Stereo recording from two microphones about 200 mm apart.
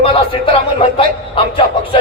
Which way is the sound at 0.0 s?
30° left (ahead or behind).